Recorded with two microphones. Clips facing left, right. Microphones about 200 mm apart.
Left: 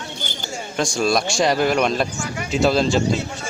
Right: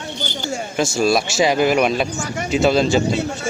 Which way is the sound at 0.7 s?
5° right (ahead or behind).